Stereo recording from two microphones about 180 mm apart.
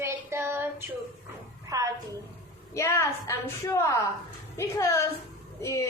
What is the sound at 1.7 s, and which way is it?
Speech, 20° right (ahead or behind).